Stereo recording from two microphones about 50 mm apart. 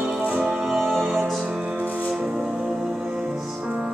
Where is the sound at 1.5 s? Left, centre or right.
Right.